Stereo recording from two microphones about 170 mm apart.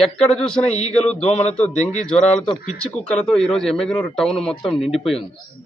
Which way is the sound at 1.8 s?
45° left (ahead or behind).